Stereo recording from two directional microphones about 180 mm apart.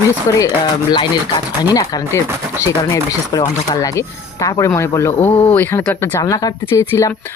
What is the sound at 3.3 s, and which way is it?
Speech, 20° left (ahead or behind).